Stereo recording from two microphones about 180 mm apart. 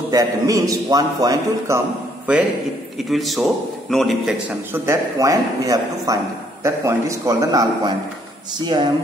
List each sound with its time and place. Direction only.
0.1 s a man's voice: 20° right (ahead or behind)
3.1 s a man's voice: centre (ahead or behind); by 8.8 s 25° right (ahead or behind)